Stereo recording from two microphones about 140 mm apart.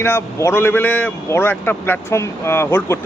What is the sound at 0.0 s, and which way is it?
A man's voice, 20° left (ahead or behind).